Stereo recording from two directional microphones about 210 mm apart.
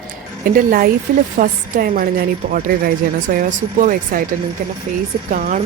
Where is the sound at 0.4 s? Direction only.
45° right (ahead or behind).